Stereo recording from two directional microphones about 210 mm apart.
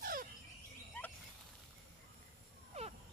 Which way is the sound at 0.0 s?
40° right (ahead or behind).